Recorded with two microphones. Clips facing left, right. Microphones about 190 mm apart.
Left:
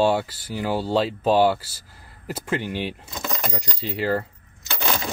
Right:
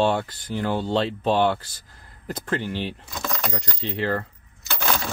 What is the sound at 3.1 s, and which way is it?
Keys jangling, 20° left (ahead or behind).